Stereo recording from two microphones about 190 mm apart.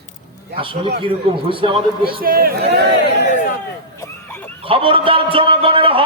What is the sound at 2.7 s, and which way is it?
Speech, 60° right (ahead or behind).